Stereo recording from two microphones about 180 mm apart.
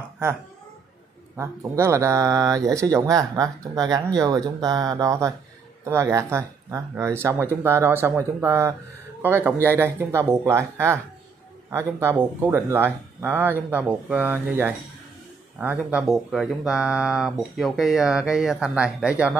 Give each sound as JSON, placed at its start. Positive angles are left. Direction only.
{"t": 1.3, "sound": "speech", "side_deg": -15}